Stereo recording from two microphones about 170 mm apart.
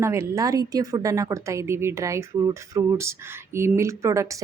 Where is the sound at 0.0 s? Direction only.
15° right (ahead or behind).